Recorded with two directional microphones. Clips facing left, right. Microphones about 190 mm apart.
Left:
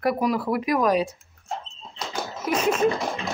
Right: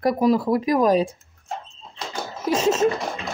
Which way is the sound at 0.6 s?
30° right (ahead or behind).